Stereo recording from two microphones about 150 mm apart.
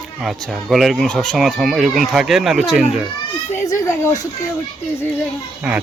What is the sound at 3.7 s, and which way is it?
Speech, 20° left (ahead or behind).